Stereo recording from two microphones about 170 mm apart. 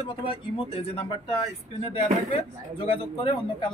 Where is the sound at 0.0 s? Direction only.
30° left (ahead or behind).